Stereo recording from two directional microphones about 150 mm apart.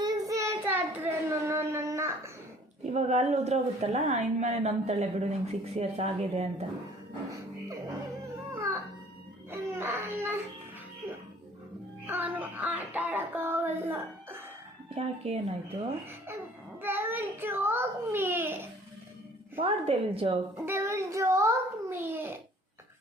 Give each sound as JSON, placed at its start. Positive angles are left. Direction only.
{"t": 0.0, "sound": "child singing", "side_deg": -25}
{"t": 2.8, "sound": "a woman's voice", "side_deg": -50}
{"t": 9.5, "sound": "baby cry", "side_deg": -15}
{"t": 12.0, "sound": "child singing", "side_deg": -10}
{"t": 14.9, "sound": "a woman's voice", "side_deg": -40}
{"t": 16.8, "sound": "a child's voice", "side_deg": -15}
{"t": 19.5, "sound": "a woman's voice", "side_deg": -40}
{"t": 20.6, "sound": "a child's voice", "side_deg": -15}